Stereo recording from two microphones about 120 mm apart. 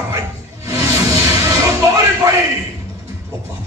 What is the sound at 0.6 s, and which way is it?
Music, 25° right (ahead or behind).